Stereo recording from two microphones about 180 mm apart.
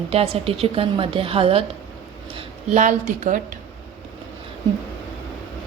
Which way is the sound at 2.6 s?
45° right (ahead or behind).